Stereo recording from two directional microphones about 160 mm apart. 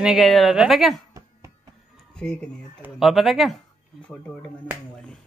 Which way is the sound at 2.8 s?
Centre (ahead or behind).